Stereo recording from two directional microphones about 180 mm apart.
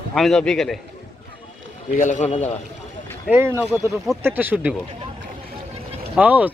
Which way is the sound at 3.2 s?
15° right (ahead or behind).